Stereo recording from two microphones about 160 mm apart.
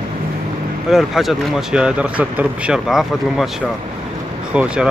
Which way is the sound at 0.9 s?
Centre (ahead or behind).